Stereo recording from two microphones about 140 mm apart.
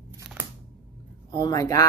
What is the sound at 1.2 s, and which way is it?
Speech, 25° left (ahead or behind).